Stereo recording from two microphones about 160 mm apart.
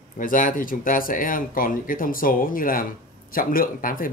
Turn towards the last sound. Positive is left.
turn(degrees=60)  # may be behind; listen again after turning